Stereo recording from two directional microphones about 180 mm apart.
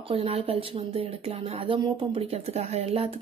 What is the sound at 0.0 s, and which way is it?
Speech, 30° right (ahead or behind).